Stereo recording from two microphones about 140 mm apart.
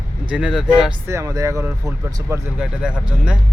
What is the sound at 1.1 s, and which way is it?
Speech, 20° right (ahead or behind).